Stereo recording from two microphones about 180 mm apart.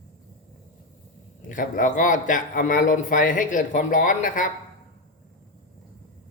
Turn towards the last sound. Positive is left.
turn(degrees=45)  # may be behind; listen again after turning